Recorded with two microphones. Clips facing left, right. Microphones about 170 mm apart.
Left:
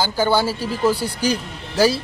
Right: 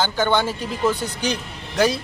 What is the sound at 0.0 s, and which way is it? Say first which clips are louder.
A man's voice: left 1 dB; 10° left (ahead or behind).